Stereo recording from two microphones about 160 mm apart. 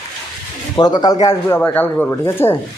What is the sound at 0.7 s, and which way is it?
Speech, 25° left (ahead or behind).